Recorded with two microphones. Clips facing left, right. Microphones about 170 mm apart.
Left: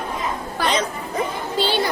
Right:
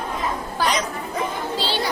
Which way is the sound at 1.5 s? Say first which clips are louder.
Left 6 dB; 55° left (ahead or behind).